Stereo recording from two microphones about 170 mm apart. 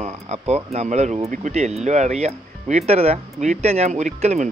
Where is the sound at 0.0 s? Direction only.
40° right (ahead or behind).